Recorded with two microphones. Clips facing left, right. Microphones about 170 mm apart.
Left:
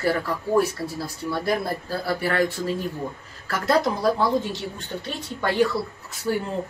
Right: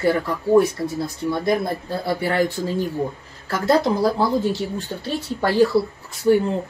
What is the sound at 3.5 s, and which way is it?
Speech, 30° right (ahead or behind).